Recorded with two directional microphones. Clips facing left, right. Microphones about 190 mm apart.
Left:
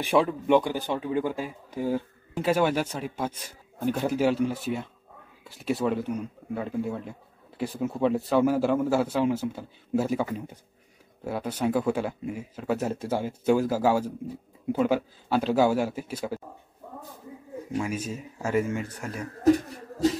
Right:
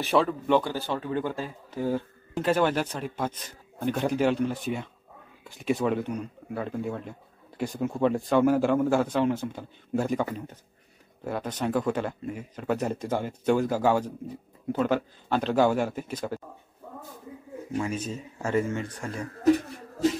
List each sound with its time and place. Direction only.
0.0 s speech: 15° left (ahead or behind)
17.7 s speech: 10° left (ahead or behind)
19.4 s speech: 40° left (ahead or behind)